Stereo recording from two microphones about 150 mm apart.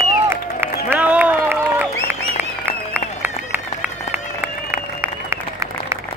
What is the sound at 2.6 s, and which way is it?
Run, 15° right (ahead or behind).